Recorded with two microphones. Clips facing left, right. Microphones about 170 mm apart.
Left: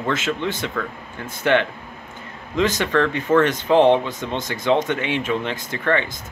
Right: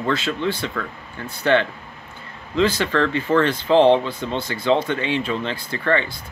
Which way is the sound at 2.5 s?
15° left (ahead or behind).